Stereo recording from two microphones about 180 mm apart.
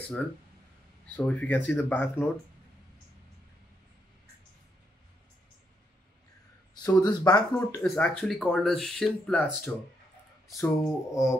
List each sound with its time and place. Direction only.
1.1 s speech: 10° left (ahead or behind)
6.8 s speech: 20° left (ahead or behind)
10.5 s speech: 15° left (ahead or behind)